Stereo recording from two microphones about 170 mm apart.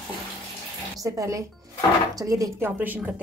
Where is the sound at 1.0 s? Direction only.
20° right (ahead or behind).